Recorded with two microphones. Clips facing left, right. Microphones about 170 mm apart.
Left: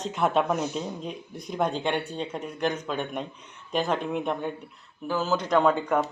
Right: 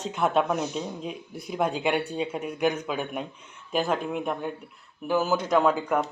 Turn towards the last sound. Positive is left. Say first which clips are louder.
# even
turn(degrees=0)  # may be behind; listen again after turning